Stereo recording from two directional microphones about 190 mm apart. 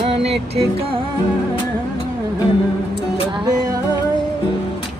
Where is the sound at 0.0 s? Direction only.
30° right (ahead or behind).